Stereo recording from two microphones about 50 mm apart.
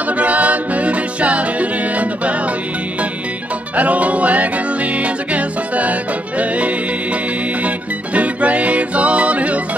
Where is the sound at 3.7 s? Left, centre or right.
Right.